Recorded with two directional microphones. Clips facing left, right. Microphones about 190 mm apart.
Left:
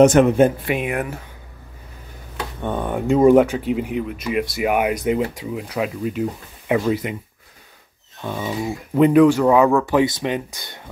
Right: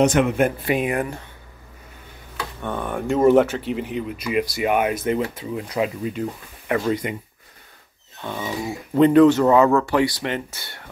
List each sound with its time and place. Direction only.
0.0 s speech: 50° left (ahead or behind)
0.7 s speech: centre (ahead or behind)
2.6 s speech: 20° left (ahead or behind); by 7.2 s 5° left (ahead or behind)
8.2 s speech: 10° left (ahead or behind)
9.8 s speech: 15° left (ahead or behind)